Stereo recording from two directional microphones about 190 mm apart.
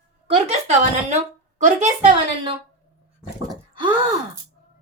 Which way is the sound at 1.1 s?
40° right (ahead or behind).